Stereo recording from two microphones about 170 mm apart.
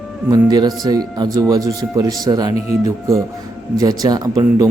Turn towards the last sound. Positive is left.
turn(degrees=-20)  # may be behind; listen again after turning